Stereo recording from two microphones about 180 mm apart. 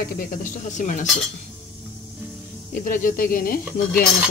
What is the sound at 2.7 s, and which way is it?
Speech, 50° left (ahead or behind).